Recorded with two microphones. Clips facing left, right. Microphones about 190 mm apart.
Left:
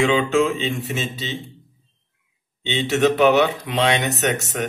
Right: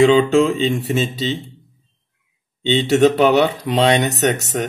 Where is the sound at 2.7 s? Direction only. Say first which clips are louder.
Right 5 dB; 35° right (ahead or behind).